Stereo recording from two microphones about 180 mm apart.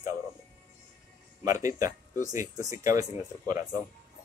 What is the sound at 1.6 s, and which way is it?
A man's voice, 20° right (ahead or behind).